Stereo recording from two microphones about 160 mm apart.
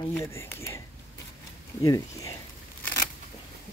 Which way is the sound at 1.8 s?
20° left (ahead or behind).